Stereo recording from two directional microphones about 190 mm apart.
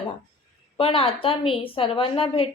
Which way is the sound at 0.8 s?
30° left (ahead or behind).